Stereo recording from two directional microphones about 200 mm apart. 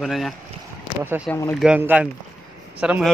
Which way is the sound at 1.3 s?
10° left (ahead or behind).